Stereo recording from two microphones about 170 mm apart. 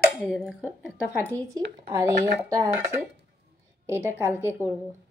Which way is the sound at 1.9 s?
20° right (ahead or behind).